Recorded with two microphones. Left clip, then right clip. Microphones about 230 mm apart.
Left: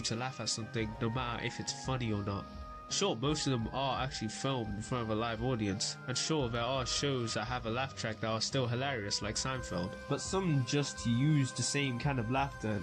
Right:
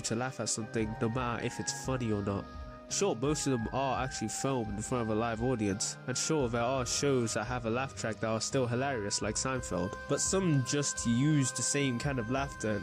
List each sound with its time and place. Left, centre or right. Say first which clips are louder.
0.1 s speech: right 3 dB; right